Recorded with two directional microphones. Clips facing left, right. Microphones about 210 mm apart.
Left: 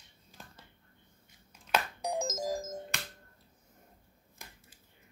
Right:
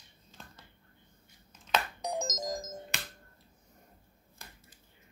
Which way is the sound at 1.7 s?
10° left (ahead or behind).